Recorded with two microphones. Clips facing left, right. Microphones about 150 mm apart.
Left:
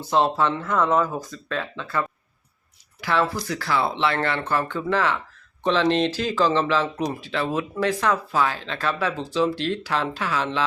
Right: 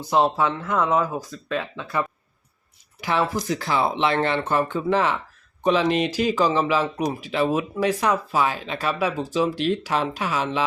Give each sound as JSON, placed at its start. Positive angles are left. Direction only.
{"t": 0.0, "sound": "speech", "side_deg": -15}